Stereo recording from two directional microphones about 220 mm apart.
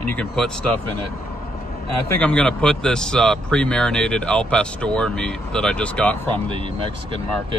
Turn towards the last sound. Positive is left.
turn(degrees=-25)  # may be behind; listen again after turning